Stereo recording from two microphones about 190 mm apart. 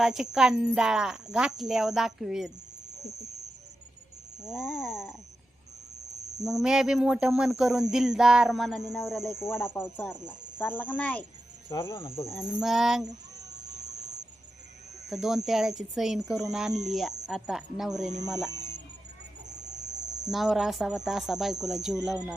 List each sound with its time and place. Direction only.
0.0 s speech: centre (ahead or behind)
4.4 s speech: 5° right (ahead or behind)
6.4 s speech: centre (ahead or behind)
9.5 s speech: 10° left (ahead or behind)
12.3 s speech: 5° right (ahead or behind)
13.1 s a sound: 20° right (ahead or behind)
13.7 s music: 40° right (ahead or behind)
15.1 s speech: centre (ahead or behind)
18.5 s music: 20° right (ahead or behind)
19.5 s vehicle: 40° right (ahead or behind)
20.3 s speech: centre (ahead or behind)